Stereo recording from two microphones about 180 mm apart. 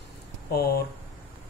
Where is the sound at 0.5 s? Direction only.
60° left (ahead or behind).